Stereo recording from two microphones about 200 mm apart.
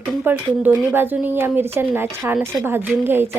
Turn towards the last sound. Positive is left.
turn(degrees=-10)  # may be behind; listen again after turning